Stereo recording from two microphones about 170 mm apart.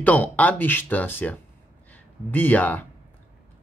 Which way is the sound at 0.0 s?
10° left (ahead or behind).